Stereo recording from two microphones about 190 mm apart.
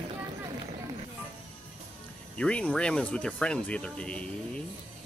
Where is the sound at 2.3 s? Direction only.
5° left (ahead or behind).